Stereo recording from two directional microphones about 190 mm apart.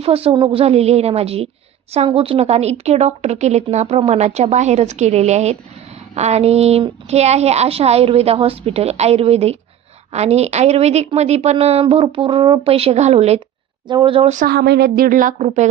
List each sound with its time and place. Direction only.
0.0 s a woman's voice: 30° right (ahead or behind)
14.3 s a woman's voice: 55° right (ahead or behind); by 15.7 s 35° right (ahead or behind)